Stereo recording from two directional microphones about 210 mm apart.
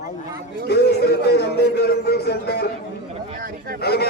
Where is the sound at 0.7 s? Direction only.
50° left (ahead or behind).